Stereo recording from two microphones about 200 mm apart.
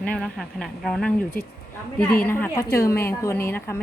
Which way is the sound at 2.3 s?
10° left (ahead or behind).